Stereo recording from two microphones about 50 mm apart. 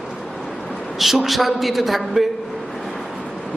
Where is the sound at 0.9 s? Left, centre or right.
Centre.